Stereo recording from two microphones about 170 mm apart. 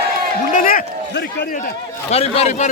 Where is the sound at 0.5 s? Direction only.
55° left (ahead or behind).